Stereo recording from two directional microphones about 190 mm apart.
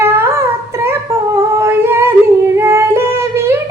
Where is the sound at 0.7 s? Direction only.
15° right (ahead or behind).